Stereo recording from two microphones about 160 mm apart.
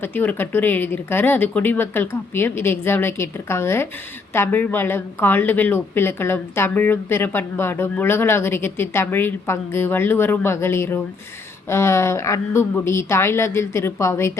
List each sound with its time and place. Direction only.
0.0 s a woman's voice: 10° left (ahead or behind)